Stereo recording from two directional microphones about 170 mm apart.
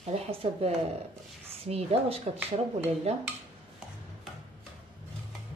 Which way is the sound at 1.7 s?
35° right (ahead or behind).